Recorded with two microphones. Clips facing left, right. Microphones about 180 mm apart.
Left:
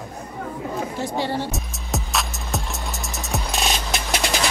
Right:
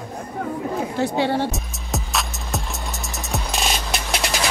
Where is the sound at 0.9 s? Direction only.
65° right (ahead or behind).